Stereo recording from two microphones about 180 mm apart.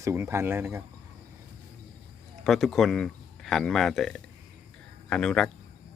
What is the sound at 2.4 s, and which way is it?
Speech, centre (ahead or behind).